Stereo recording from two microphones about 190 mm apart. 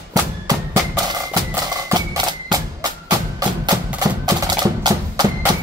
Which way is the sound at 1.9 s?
20° right (ahead or behind).